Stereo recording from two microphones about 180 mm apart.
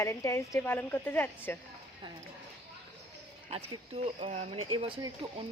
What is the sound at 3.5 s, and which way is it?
Speech, 35° right (ahead or behind).